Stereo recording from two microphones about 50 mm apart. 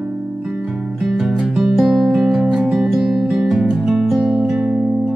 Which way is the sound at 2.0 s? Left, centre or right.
Centre.